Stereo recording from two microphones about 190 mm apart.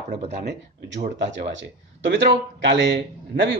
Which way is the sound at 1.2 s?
75° right (ahead or behind).